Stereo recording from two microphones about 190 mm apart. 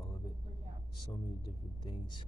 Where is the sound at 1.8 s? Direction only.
25° left (ahead or behind).